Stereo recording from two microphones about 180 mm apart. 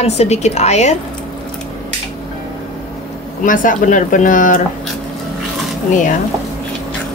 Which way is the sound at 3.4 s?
45° left (ahead or behind).